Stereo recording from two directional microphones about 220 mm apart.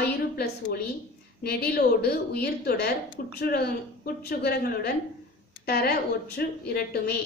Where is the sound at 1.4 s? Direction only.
45° left (ahead or behind).